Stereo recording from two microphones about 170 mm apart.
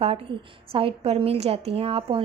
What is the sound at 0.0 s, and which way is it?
A woman's voice, 35° right (ahead or behind).